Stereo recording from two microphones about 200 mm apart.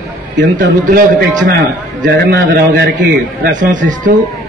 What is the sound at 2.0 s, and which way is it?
A man's voice, 50° right (ahead or behind).